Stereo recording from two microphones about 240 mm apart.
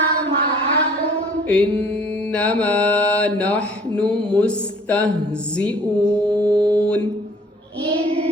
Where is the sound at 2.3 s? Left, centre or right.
Centre.